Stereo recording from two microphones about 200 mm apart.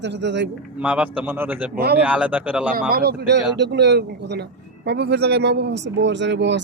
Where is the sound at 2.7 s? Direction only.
45° right (ahead or behind).